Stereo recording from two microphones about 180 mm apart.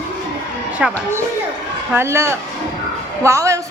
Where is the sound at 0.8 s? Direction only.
5° right (ahead or behind).